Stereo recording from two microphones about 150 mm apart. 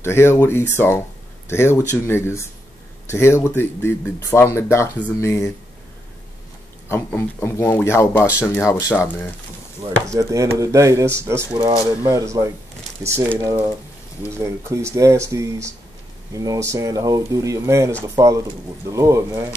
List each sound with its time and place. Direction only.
0.0 s speech: 15° left (ahead or behind)
6.9 s speech: 15° left (ahead or behind)
9.8 s speech: 25° right (ahead or behind)